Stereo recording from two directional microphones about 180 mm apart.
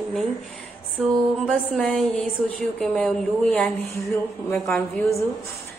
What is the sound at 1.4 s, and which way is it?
A woman's voice, centre (ahead or behind).